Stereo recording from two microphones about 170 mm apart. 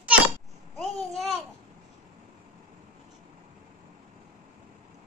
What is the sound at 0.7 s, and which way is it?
Babbling, centre (ahead or behind).